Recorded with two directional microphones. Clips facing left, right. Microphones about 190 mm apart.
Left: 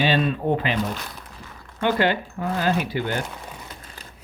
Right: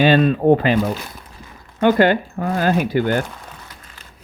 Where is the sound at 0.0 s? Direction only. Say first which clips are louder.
Right 8 dB; 50° right (ahead or behind).